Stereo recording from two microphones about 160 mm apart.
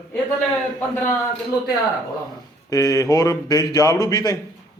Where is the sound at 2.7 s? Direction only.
20° left (ahead or behind).